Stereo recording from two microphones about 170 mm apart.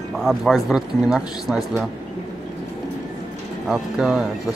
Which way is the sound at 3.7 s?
5° right (ahead or behind).